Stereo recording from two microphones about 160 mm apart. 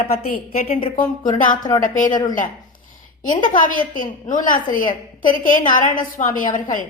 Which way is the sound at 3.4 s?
55° left (ahead or behind).